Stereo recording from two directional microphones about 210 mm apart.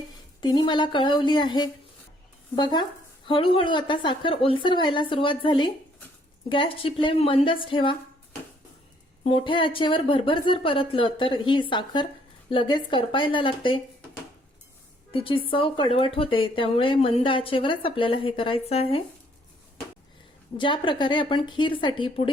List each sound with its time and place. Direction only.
0.4 s speech: 20° left (ahead or behind)
9.2 s speech: 25° left (ahead or behind)
15.1 s speech: 25° left (ahead or behind)
20.6 s speech: 25° left (ahead or behind)